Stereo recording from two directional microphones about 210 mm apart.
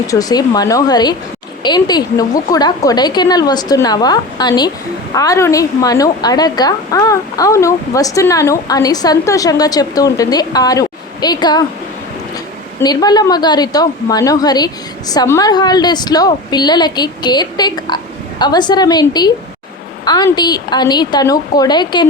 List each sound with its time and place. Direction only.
0.1 s a woman's voice: 15° left (ahead or behind)
12.8 s a woman's voice: 20° left (ahead or behind)